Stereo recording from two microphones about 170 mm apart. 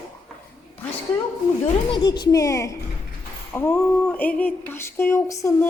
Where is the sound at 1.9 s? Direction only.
25° left (ahead or behind).